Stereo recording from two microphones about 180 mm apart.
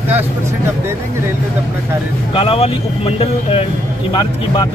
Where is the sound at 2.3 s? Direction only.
30° left (ahead or behind).